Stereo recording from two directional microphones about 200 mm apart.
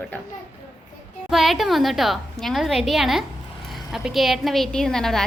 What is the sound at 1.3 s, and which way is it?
A woman's voice, centre (ahead or behind).